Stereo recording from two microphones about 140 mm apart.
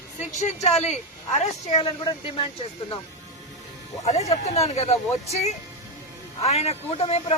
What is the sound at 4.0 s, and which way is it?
Speech, 50° left (ahead or behind).